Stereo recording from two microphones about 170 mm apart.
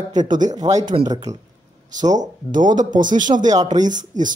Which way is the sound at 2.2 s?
50° right (ahead or behind).